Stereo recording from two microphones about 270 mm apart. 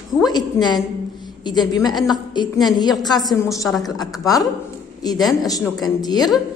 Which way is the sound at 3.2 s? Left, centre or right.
Centre.